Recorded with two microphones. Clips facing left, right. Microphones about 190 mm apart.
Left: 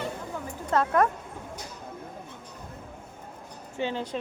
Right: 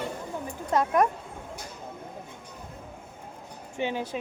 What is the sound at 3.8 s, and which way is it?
Speech, 15° right (ahead or behind).